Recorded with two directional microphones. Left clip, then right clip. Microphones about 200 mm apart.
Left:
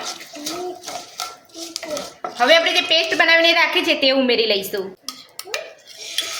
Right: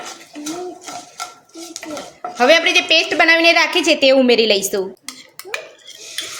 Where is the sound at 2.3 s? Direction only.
55° right (ahead or behind).